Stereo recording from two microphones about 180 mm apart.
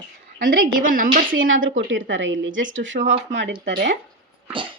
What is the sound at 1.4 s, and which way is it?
A woman's voice, 90° right.